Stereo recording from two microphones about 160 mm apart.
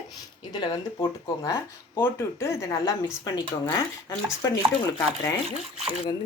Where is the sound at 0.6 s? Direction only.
25° left (ahead or behind).